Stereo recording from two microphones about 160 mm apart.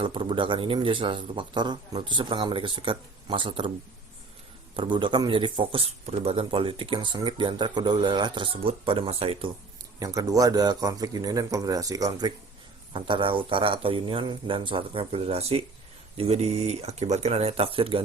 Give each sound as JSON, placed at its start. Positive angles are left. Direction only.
{"t": 0.0, "sound": "speech", "side_deg": -35}
{"t": 4.8, "sound": "speech", "side_deg": -30}
{"t": 10.0, "sound": "speech", "side_deg": -20}